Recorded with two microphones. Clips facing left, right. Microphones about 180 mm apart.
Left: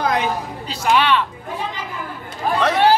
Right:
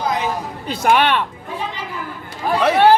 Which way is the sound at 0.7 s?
55° right (ahead or behind).